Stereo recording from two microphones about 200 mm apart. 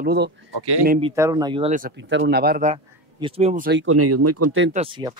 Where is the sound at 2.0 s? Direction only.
65° right (ahead or behind); by 2.7 s 50° right (ahead or behind).